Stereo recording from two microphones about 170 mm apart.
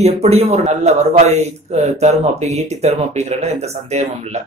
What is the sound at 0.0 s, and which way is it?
Speech, 40° right (ahead or behind).